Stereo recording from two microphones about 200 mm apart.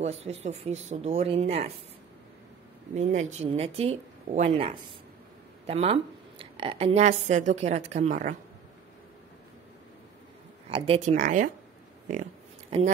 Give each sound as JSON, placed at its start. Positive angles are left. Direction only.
{"t": 0.0, "sound": "a woman's voice", "side_deg": -30}
{"t": 2.9, "sound": "a woman's voice", "side_deg": -35}
{"t": 10.7, "sound": "a woman's voice", "side_deg": -30}
{"t": 12.7, "sound": "speech", "side_deg": -30}